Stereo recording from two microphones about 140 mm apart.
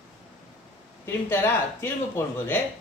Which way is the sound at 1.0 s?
15° left (ahead or behind).